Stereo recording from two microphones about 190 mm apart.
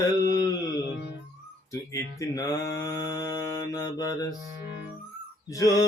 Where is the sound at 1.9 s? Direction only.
20° left (ahead or behind).